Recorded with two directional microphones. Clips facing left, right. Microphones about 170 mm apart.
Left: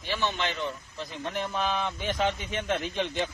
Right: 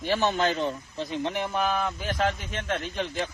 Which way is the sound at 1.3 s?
10° right (ahead or behind).